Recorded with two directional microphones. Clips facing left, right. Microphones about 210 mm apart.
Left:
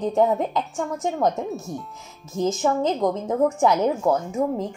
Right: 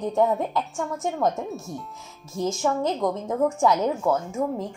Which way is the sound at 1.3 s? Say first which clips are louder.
Left 2 dB; centre (ahead or behind).